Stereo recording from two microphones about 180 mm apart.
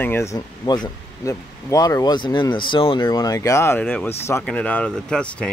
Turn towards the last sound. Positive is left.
turn(degrees=5)  # may be behind; listen again after turning